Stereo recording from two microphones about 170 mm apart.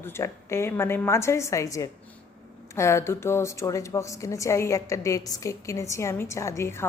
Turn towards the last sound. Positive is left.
turn(degrees=15)  # may be behind; listen again after turning